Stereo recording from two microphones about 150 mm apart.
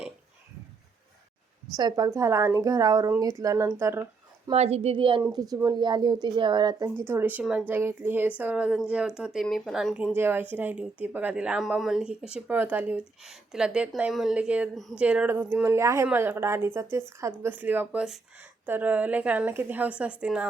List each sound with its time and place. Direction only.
1.7 s speech: 25° right (ahead or behind)
4.5 s a woman's voice: 45° right (ahead or behind)
5.3 s speech: 25° right (ahead or behind); by 9.9 s centre (ahead or behind)
10.2 s speech: 15° right (ahead or behind)